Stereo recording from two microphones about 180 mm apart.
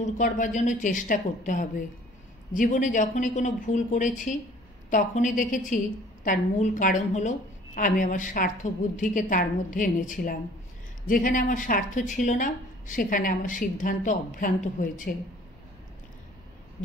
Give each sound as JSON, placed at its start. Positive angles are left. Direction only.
{"t": 0.0, "sound": "a woman's voice", "side_deg": 45}